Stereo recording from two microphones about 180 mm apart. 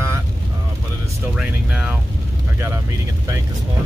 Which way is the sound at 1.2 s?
5° right (ahead or behind).